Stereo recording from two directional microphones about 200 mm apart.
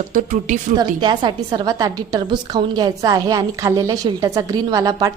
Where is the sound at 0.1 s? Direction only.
40° right (ahead or behind).